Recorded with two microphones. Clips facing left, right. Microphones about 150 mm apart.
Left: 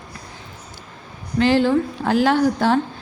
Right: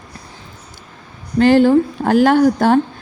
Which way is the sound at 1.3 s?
50° right (ahead or behind).